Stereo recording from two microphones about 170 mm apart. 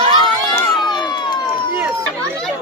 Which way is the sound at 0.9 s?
25° left (ahead or behind).